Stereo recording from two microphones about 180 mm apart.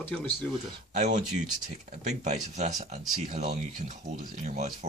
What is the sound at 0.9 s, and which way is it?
Speech, 45° right (ahead or behind).